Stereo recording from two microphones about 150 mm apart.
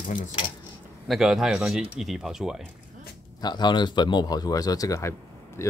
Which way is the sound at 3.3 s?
30° left (ahead or behind).